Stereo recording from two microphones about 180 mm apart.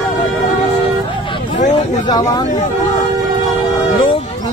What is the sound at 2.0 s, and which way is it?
Speech, 25° left (ahead or behind).